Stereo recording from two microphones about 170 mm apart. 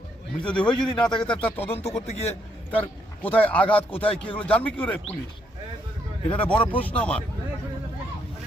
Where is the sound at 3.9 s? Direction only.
30° left (ahead or behind).